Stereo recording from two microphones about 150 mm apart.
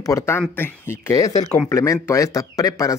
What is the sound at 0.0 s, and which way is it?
Speech, 20° left (ahead or behind).